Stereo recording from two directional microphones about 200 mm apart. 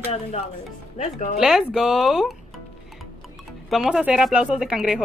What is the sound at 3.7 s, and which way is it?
Speech, 5° right (ahead or behind).